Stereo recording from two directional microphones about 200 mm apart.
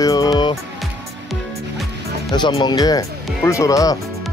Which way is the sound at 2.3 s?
20° left (ahead or behind).